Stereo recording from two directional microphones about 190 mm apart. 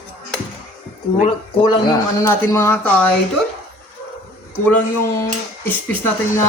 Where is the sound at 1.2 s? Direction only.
25° left (ahead or behind); by 3.2 s 10° left (ahead or behind).